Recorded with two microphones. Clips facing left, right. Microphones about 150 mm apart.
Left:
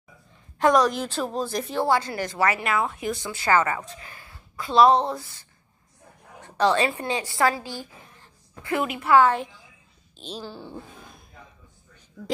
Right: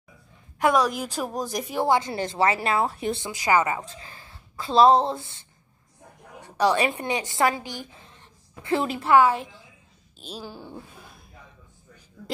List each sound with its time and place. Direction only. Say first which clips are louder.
0.6 s a woman's voice: left 2 dB; 10° right (ahead or behind); by 3.3 s 30° right (ahead or behind)
3.3 s a woman's voice: even; 15° right (ahead or behind)
3.8 s a woman's voice: even; 30° right (ahead or behind)
6.4 s a woman's voice: even; 10° right (ahead or behind); by 9.1 s 30° right (ahead or behind)
9.1 s a woman's voice: even; 10° right (ahead or behind)